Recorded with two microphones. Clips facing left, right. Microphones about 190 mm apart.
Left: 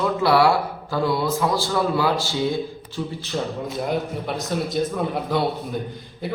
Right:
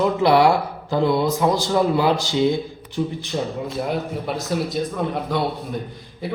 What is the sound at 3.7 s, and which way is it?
A man's voice, centre (ahead or behind).